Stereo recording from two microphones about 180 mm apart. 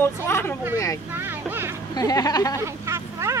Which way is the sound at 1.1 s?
10° right (ahead or behind).